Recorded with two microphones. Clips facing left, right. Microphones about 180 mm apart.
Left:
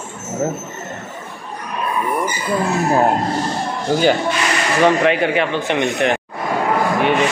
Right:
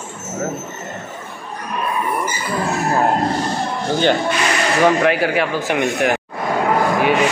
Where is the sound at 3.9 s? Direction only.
10° left (ahead or behind).